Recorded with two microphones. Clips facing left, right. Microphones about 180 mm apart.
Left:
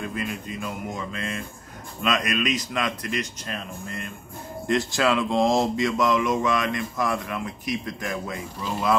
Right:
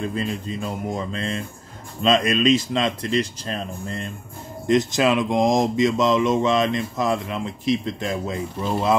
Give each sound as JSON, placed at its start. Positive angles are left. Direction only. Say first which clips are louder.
{"t": 0.0, "sound": "speech", "louder": "right 4 dB", "side_deg": -30}
{"t": 4.6, "sound": "speech", "louder": "right 4 dB", "side_deg": -20}